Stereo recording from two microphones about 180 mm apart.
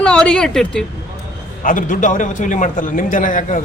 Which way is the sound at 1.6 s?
50° left (ahead or behind).